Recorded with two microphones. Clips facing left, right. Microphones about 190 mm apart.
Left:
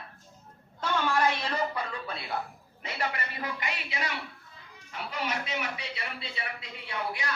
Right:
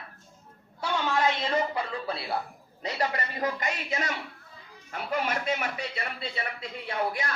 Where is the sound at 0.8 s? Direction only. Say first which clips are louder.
Even; 15° right (ahead or behind).